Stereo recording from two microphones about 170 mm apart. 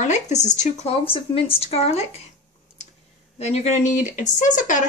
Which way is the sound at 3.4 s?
40° left (ahead or behind).